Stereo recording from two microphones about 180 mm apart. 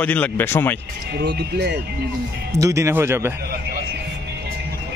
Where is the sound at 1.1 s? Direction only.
65° right (ahead or behind).